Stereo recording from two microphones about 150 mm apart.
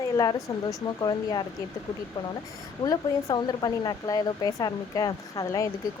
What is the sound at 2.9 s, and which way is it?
Speech, 25° left (ahead or behind).